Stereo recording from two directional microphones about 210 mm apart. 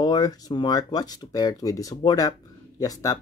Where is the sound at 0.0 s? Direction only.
20° left (ahead or behind).